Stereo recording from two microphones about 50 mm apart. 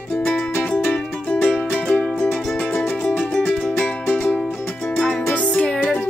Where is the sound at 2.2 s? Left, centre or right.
Left.